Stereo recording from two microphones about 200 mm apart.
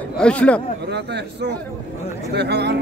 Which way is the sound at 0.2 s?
5° left (ahead or behind).